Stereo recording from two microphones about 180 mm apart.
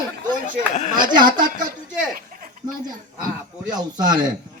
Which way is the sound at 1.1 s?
25° right (ahead or behind).